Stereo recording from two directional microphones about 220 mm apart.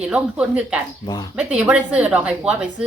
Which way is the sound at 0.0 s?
5° right (ahead or behind).